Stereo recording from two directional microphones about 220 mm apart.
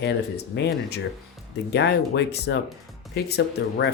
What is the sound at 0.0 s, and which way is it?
Speech, 50° left (ahead or behind).